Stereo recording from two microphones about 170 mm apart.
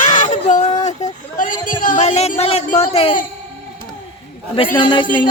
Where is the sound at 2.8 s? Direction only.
35° left (ahead or behind).